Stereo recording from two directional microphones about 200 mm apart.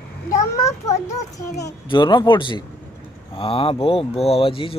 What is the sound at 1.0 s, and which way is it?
Speech, 20° left (ahead or behind).